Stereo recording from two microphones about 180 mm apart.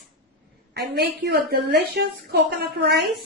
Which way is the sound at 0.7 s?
65° right (ahead or behind).